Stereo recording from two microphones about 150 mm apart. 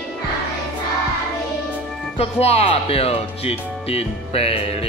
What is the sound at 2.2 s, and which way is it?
Speech, 45° left (ahead or behind).